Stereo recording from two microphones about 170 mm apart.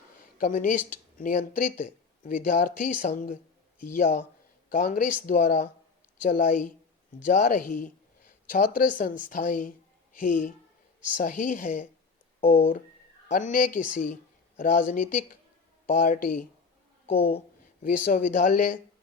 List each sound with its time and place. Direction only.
0.3 s speech: 55° left (ahead or behind)
13.2 s speech: 50° left (ahead or behind)
17.8 s speech: 50° left (ahead or behind)